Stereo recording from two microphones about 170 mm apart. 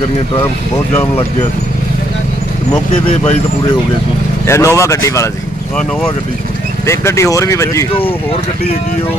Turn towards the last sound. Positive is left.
turn(degrees=20)  # may be behind; listen again after turning